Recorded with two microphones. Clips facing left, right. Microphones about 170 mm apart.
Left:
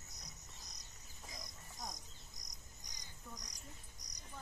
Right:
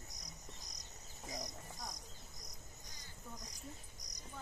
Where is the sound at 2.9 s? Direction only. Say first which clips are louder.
Right 1 dB; 15° left (ahead or behind).